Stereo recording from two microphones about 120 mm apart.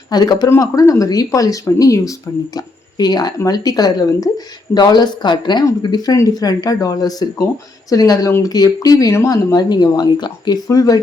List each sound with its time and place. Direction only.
0.1 s speech: 35° left (ahead or behind)